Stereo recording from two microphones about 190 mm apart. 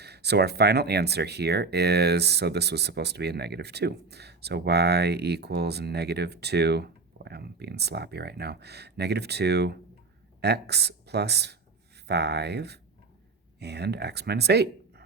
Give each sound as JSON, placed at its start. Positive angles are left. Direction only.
{"t": 0.0, "sound": "speech", "side_deg": -60}